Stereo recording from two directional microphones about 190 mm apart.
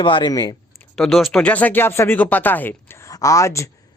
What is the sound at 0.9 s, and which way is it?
Speech, centre (ahead or behind).